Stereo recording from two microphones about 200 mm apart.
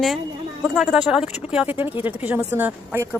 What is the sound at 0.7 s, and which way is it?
A woman's voice, 5° right (ahead or behind).